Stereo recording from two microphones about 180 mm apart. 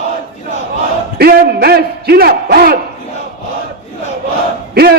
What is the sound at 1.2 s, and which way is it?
A man's voice, 60° right (ahead or behind).